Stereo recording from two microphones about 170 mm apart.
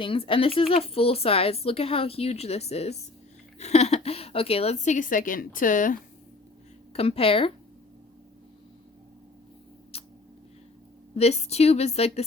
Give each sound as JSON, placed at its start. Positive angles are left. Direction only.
{"t": 0.0, "sound": "a woman's voice", "side_deg": 30}
{"t": 6.9, "sound": "speech", "side_deg": 35}
{"t": 9.9, "sound": "a sound", "side_deg": 35}
{"t": 11.1, "sound": "speech", "side_deg": 40}